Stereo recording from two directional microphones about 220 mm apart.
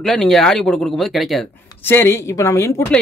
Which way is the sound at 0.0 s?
Centre (ahead or behind).